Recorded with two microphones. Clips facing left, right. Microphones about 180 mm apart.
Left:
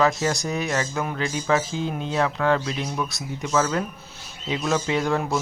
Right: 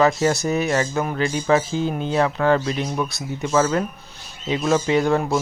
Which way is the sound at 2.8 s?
20° right (ahead or behind).